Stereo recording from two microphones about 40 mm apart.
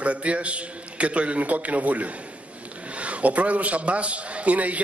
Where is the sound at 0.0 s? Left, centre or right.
Right.